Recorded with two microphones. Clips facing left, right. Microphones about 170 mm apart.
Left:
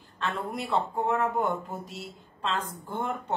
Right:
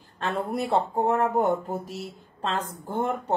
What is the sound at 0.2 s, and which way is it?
Speech, 40° right (ahead or behind).